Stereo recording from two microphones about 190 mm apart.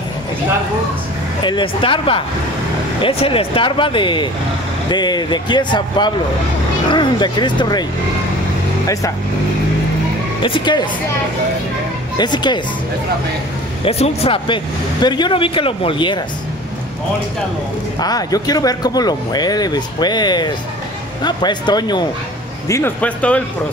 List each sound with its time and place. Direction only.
1.4 s speech: 25° left (ahead or behind)
10.4 s speech: 25° left (ahead or behind)
12.2 s speech: 25° left (ahead or behind)
13.8 s speech: 30° left (ahead or behind)
17.9 s speech: 20° left (ahead or behind)